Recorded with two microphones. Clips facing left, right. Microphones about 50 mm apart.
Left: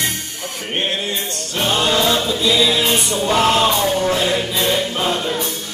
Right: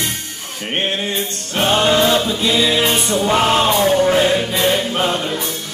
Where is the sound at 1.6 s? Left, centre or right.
Right.